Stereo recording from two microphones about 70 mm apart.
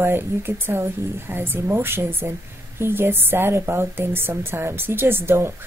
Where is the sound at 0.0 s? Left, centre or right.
Right.